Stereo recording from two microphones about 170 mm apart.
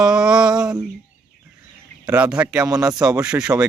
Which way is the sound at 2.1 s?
10° right (ahead or behind).